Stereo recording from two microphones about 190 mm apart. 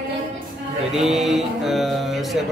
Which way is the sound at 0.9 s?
Centre (ahead or behind).